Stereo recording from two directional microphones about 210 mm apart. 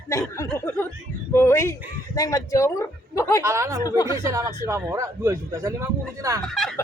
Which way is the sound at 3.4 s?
15° right (ahead or behind).